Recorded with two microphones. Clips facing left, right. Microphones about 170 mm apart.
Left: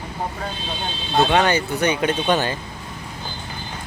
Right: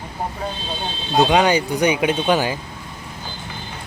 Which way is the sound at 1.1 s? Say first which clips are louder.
Right 2 dB; 15° right (ahead or behind).